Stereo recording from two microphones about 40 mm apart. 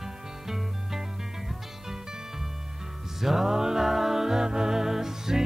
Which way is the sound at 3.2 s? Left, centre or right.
Centre.